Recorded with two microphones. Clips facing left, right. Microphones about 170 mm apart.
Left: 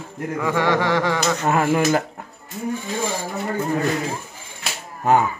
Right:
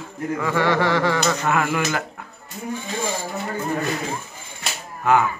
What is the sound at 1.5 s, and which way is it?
Speech, 35° left (ahead or behind).